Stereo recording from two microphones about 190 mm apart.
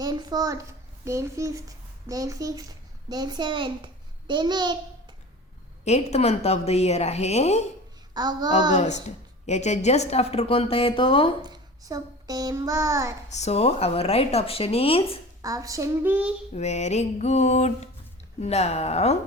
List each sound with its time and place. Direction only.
0.0 s a child's voice: 20° right (ahead or behind)
5.8 s a woman's voice: 35° left (ahead or behind)
8.1 s a woman's voice: 20° right (ahead or behind)
8.7 s a woman's voice: 35° left (ahead or behind)
11.4 s child singing: 20° right (ahead or behind)
13.3 s a woman's voice: 35° left (ahead or behind)
15.4 s speech: 15° right (ahead or behind)
16.6 s a woman's voice: 35° left (ahead or behind)